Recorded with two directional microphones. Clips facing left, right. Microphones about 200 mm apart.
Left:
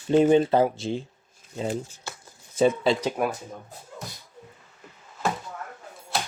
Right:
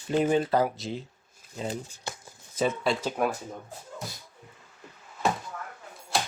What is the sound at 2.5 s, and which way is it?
Speech, 25° left (ahead or behind).